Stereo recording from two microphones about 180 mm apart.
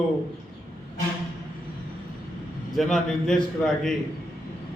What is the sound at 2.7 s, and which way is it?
A man's voice, centre (ahead or behind).